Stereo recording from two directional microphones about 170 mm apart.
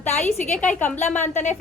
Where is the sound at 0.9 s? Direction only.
40° left (ahead or behind).